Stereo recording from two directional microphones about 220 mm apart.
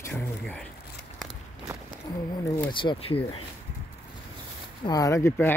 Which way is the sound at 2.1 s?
15° left (ahead or behind).